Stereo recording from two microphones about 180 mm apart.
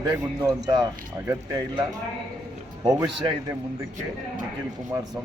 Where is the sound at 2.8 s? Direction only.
20° right (ahead or behind).